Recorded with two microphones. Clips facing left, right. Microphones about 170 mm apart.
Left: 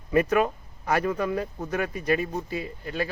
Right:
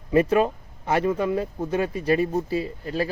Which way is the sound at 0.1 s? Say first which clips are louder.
Right 3 dB; 30° right (ahead or behind).